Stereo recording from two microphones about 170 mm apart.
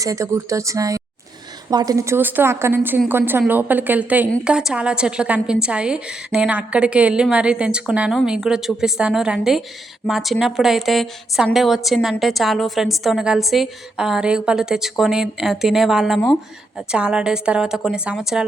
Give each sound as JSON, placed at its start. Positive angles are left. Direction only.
{"t": 0.0, "sound": "a woman's voice", "side_deg": -20}